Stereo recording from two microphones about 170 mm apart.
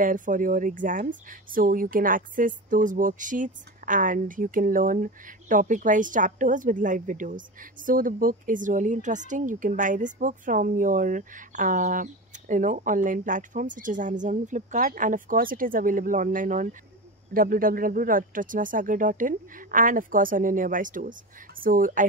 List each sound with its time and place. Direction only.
0.0 s speech: 50° right (ahead or behind)